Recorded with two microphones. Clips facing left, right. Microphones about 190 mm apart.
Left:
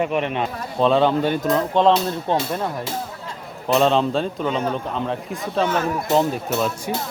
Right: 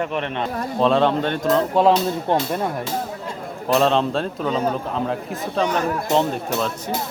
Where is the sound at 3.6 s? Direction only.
Centre (ahead or behind).